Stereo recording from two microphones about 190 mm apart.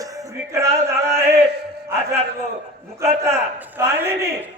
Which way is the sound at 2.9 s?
15° right (ahead or behind).